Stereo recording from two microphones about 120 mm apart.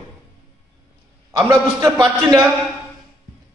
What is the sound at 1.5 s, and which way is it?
Speech, 25° right (ahead or behind).